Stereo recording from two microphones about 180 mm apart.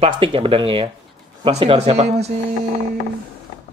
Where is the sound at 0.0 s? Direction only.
30° right (ahead or behind).